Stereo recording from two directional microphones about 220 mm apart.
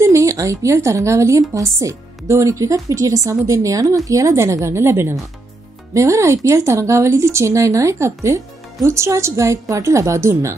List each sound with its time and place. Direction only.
0.0 s speech: 15° right (ahead or behind)